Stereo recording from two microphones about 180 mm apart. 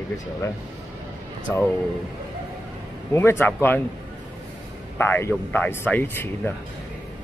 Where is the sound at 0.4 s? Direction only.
15° left (ahead or behind).